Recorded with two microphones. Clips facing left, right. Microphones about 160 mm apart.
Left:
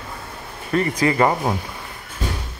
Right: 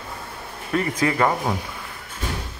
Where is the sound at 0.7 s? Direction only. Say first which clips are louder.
Left 3 dB; centre (ahead or behind).